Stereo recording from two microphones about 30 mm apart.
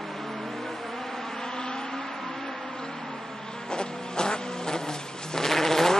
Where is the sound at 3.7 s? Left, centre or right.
Left.